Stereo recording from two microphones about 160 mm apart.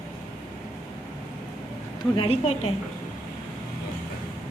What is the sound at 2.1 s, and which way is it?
Speech, 35° left (ahead or behind).